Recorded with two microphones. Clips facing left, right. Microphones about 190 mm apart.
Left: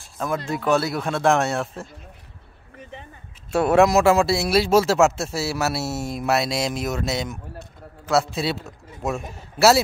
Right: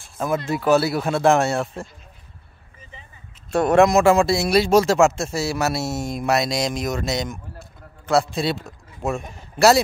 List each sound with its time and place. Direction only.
0.5 s speech: 5° right (ahead or behind)
2.8 s a sound: 65° left (ahead or behind)
3.5 s a man's voice: 5° left (ahead or behind)